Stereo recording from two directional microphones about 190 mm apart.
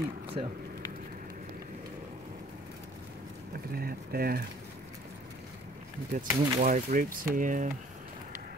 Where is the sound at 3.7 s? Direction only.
50° right (ahead or behind).